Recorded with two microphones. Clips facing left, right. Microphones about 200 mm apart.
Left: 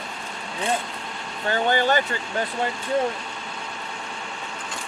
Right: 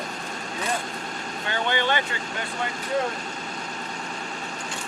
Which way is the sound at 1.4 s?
40° left (ahead or behind).